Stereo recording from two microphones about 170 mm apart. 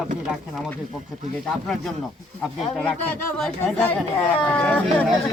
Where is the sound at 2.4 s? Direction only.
5° left (ahead or behind).